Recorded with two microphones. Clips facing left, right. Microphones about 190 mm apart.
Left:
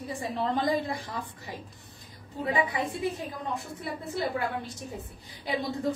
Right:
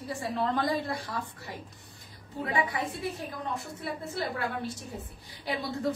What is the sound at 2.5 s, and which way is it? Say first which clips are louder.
Speech: left 1 dB; 15° left (ahead or behind).